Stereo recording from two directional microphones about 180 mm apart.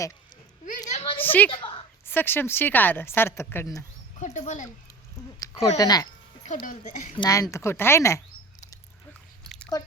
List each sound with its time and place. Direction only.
0.9 s a sound: 35° left (ahead or behind)
1.2 s a woman's voice: 10° left (ahead or behind)
1.5 s a sound: 30° left (ahead or behind)
2.0 s a woman's voice: 10° left (ahead or behind)
4.2 s speech: 40° left (ahead or behind)
5.4 s speech: 20° left (ahead or behind)
6.7 s a child's voice: 45° left (ahead or behind)
7.2 s a woman's voice: 20° left (ahead or behind)
9.4 s chewing: 5° left (ahead or behind)